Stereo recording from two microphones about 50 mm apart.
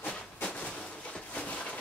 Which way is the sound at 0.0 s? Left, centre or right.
Left.